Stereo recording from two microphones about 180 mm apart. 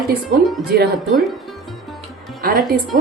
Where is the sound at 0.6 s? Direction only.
60° right (ahead or behind).